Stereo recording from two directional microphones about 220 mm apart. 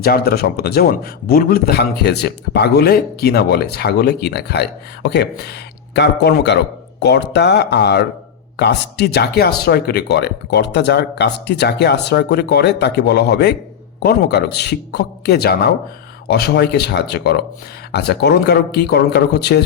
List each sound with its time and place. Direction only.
0.0 s a man's voice: 45° left (ahead or behind)